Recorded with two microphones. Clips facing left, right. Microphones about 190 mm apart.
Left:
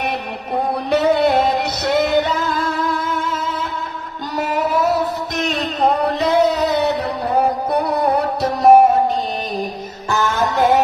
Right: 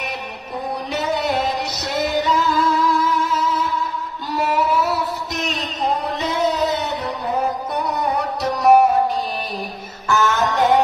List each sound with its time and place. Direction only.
0.8 s music: 60° left (ahead or behind)
4.4 s music: 45° left (ahead or behind)
5.8 s music: 65° left (ahead or behind)
7.7 s music: 60° left (ahead or behind)
8.4 s music: 25° left (ahead or behind)
10.0 s music: 15° left (ahead or behind)